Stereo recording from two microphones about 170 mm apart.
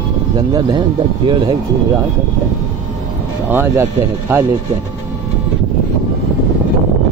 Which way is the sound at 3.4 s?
15° right (ahead or behind).